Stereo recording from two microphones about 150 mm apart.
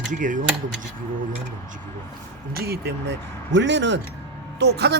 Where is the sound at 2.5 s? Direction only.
90° right.